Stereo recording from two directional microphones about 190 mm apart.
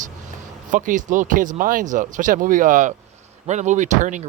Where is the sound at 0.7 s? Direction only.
45° right (ahead or behind).